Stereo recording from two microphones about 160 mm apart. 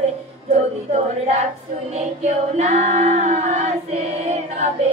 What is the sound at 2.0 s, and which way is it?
Female singing, 45° right (ahead or behind).